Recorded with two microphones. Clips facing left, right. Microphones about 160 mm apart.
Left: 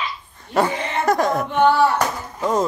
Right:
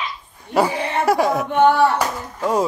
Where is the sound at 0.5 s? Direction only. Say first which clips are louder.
Right 1 dB; 5° right (ahead or behind).